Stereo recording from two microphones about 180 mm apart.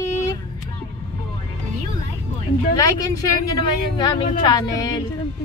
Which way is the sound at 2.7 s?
20° left (ahead or behind).